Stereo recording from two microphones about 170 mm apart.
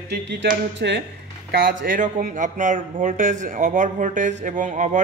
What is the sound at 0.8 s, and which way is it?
Speech, 70° right (ahead or behind).